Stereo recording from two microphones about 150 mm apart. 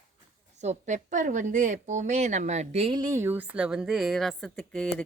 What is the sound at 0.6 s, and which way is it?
A woman's voice, 50° right (ahead or behind).